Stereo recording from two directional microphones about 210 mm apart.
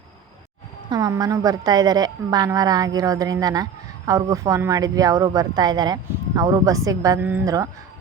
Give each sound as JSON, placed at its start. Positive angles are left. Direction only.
{"t": 0.9, "sound": "a woman's voice", "side_deg": -15}